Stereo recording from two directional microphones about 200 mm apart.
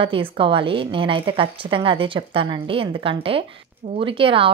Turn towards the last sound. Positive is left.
turn(degrees=-25)  # may be behind; listen again after turning